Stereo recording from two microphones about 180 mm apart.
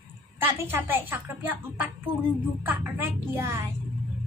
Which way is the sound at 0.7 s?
10° right (ahead or behind).